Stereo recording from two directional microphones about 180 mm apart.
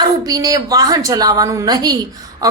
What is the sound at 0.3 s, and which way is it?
A woman's voice, 20° right (ahead or behind).